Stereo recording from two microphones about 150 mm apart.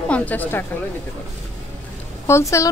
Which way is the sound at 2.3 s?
20° left (ahead or behind).